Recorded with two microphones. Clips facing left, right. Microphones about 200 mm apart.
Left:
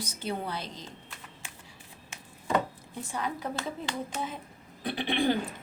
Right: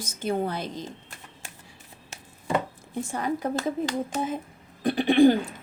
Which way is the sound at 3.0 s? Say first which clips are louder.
Right 6 dB; 50° right (ahead or behind).